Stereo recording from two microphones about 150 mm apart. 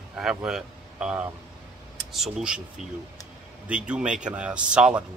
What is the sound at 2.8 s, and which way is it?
Speech, 50° right (ahead or behind).